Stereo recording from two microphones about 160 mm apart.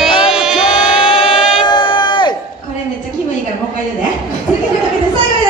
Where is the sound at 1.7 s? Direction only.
30° left (ahead or behind).